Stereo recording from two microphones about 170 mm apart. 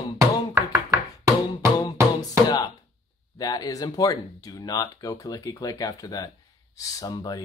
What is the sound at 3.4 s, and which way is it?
Speech, 20° left (ahead or behind).